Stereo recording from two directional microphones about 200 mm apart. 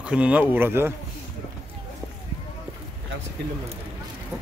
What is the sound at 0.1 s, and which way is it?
Speech, 5° right (ahead or behind).